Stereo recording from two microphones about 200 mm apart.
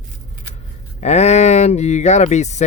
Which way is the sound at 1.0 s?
35° left (ahead or behind).